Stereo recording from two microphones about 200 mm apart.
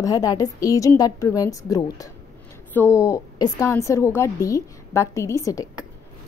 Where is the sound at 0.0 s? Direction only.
20° left (ahead or behind).